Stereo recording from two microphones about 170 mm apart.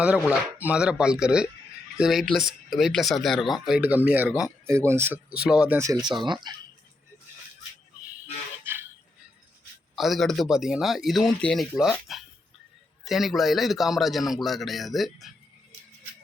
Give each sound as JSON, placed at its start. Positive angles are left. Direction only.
{"t": 0.2, "sound": "speech", "side_deg": -5}
{"t": 8.7, "sound": "a sound", "side_deg": -10}
{"t": 9.9, "sound": "speech", "side_deg": 0}